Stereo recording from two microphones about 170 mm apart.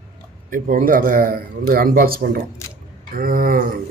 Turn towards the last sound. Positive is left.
turn(degrees=-55)  # may be behind; listen again after turning